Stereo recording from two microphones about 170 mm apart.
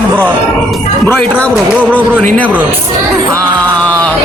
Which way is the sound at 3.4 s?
5° left (ahead or behind).